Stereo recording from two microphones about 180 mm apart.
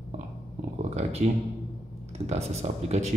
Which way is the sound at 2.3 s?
35° right (ahead or behind).